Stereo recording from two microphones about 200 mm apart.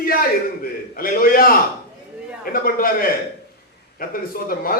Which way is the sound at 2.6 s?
45° left (ahead or behind).